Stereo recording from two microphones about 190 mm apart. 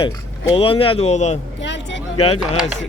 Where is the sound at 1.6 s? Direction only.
70° left (ahead or behind).